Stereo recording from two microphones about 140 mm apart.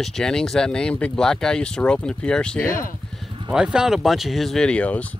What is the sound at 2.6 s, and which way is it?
Speech, 80° left.